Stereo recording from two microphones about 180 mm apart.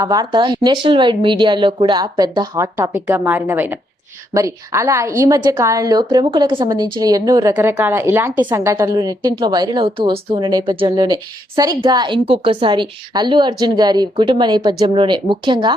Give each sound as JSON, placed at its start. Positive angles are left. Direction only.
{"t": 0.0, "sound": "a woman's voice", "side_deg": -20}